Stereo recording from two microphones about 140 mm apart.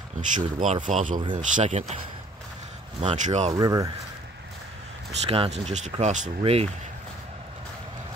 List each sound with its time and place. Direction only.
0.2 s speech: 65° right (ahead or behind)
3.0 s speech: 55° right (ahead or behind)
3.5 s speech: 25° right (ahead or behind)
5.3 s speech: 50° right (ahead or behind)
5.9 s speech: 60° right (ahead or behind)
6.4 s speech: 45° right (ahead or behind)